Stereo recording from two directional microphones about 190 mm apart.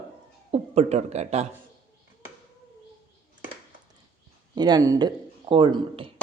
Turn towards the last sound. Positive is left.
turn(degrees=-25)  # may be behind; listen again after turning